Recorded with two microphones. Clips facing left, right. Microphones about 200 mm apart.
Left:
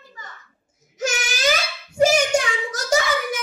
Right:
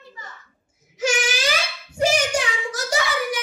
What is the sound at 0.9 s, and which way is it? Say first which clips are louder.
Child singing: right 3 dB; 45° left (ahead or behind).